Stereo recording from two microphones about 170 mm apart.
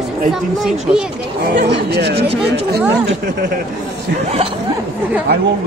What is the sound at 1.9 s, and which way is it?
Speech, 75° right (ahead or behind).